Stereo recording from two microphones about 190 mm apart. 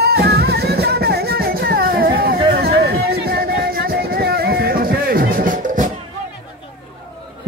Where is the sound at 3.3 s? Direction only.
50° right (ahead or behind).